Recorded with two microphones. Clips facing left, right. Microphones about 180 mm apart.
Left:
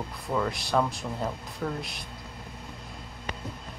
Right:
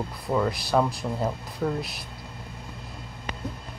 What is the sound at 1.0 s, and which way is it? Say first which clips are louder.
Speech: right 4 dB; 20° right (ahead or behind).